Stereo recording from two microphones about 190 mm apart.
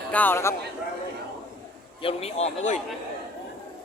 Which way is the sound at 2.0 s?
30° left (ahead or behind).